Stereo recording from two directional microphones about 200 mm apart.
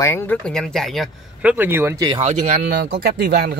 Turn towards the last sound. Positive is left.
turn(degrees=-50)  # may be behind; listen again after turning